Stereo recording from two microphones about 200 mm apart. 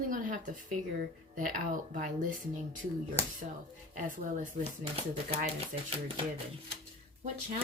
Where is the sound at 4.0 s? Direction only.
40° right (ahead or behind).